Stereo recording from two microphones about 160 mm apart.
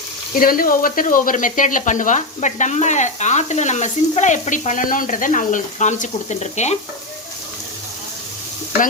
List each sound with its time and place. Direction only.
0.3 s speech: 65° left (ahead or behind); by 6.7 s 45° left (ahead or behind)